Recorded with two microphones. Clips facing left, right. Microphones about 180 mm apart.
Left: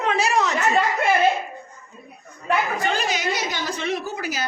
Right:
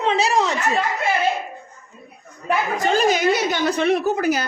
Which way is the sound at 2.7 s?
45° right (ahead or behind).